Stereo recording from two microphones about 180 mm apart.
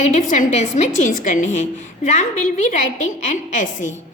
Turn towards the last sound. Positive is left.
turn(degrees=45)  # may be behind; listen again after turning